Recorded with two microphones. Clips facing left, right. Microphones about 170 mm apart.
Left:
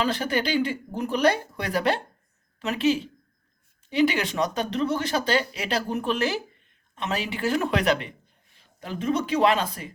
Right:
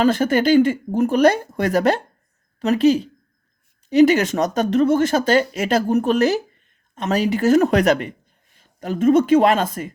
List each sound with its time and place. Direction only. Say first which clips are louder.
0.0 s a woman's voice: right 9 dB; 45° right (ahead or behind)